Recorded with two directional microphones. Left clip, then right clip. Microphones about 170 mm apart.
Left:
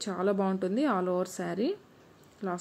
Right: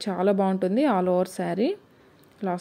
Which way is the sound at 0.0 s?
20° right (ahead or behind).